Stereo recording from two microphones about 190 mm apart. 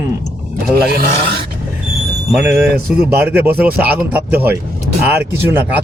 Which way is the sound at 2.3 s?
Centre (ahead or behind).